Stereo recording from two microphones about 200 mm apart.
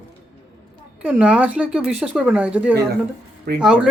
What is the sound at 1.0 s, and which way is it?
Speech, 5° right (ahead or behind).